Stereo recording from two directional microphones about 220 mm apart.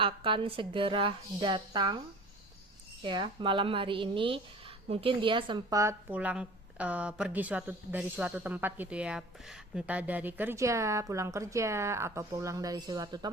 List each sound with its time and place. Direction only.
0.0 s a woman's voice: 25° right (ahead or behind)
3.0 s a woman's voice: 20° right (ahead or behind)